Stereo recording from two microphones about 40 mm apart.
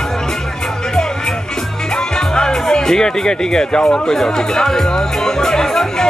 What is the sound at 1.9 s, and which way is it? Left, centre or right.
Speech, centre.